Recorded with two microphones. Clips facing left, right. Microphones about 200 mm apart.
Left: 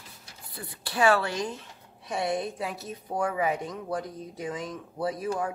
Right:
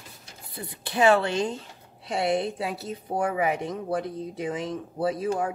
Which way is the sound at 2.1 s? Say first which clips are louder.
Right 4 dB; 75° right (ahead or behind).